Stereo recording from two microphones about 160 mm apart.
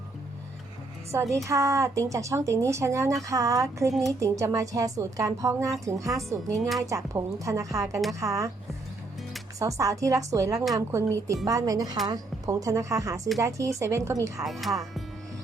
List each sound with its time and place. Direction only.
1.1 s speech: 20° right (ahead or behind)
9.6 s speech: 20° right (ahead or behind)
14.4 s speech: centre (ahead or behind)